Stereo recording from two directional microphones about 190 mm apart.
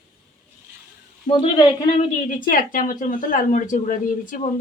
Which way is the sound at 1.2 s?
25° left (ahead or behind).